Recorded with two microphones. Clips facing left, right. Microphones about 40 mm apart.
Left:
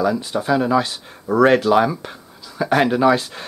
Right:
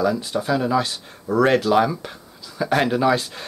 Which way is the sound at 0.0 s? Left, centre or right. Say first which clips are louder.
Left 2 dB; centre.